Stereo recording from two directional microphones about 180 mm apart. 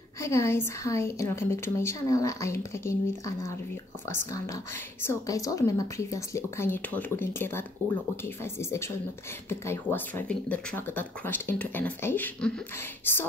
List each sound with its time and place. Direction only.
0.2 s a woman's voice: 15° left (ahead or behind)